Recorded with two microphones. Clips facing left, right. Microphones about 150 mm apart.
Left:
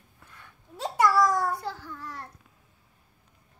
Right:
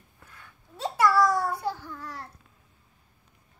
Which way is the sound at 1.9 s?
15° right (ahead or behind).